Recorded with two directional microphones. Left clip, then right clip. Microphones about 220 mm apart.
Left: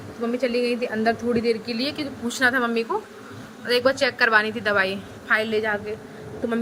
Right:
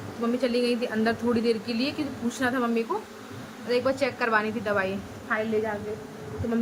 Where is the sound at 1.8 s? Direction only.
30° left (ahead or behind); by 5.8 s 50° left (ahead or behind).